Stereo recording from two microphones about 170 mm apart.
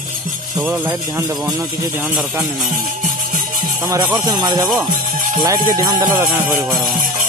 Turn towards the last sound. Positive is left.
turn(degrees=-15)  # may be behind; listen again after turning